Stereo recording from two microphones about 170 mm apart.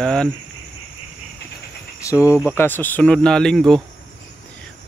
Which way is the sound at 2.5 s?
10° left (ahead or behind).